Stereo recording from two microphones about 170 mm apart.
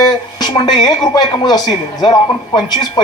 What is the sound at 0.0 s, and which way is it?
Speech, 25° left (ahead or behind).